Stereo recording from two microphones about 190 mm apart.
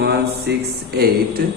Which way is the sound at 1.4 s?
50° right (ahead or behind).